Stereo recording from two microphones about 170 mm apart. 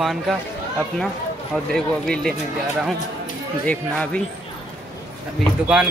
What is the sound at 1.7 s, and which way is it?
Speech, 5° left (ahead or behind).